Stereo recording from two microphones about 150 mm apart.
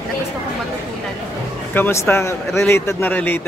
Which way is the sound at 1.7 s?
15° left (ahead or behind).